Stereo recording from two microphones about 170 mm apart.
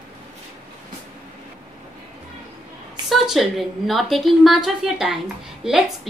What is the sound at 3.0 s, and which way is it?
A woman's voice, centre (ahead or behind).